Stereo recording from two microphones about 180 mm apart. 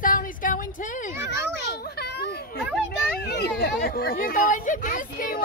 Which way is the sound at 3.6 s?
55° left (ahead or behind).